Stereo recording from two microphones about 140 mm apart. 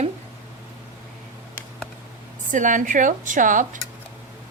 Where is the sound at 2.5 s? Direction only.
65° right (ahead or behind).